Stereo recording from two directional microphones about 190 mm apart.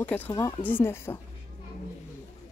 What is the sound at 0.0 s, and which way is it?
Speech, 10° left (ahead or behind).